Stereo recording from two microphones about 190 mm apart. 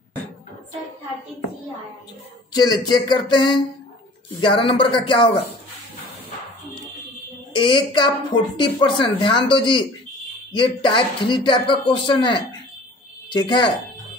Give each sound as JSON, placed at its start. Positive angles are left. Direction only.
{"t": 2.5, "sound": "a woman's voice", "side_deg": 20}
{"t": 7.5, "sound": "a woman's voice", "side_deg": 25}